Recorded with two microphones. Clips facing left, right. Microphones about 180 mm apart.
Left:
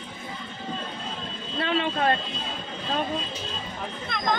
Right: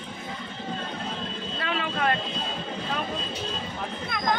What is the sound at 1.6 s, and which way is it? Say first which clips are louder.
Speech: left 4 dB; 30° left (ahead or behind).